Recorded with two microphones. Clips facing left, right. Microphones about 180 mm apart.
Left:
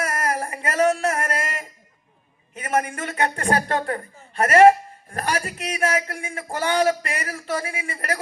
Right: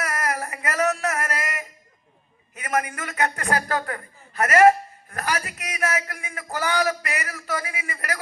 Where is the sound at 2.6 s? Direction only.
30° left (ahead or behind).